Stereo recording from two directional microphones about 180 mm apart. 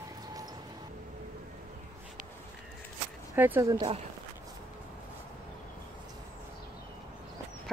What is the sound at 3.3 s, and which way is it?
Speech, 10° right (ahead or behind).